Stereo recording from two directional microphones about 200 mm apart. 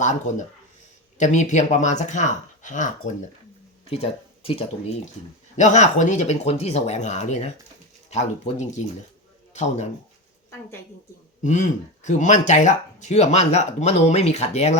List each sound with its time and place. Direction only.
0.0 s speech: 35° left (ahead or behind)
11.4 s speech: 35° left (ahead or behind)